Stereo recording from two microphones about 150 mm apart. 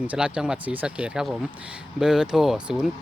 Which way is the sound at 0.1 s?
5° right (ahead or behind).